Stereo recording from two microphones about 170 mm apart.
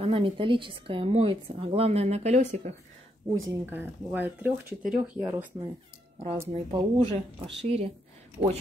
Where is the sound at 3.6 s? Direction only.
10° right (ahead or behind).